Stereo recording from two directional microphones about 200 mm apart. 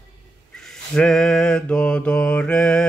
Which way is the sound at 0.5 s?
5° left (ahead or behind).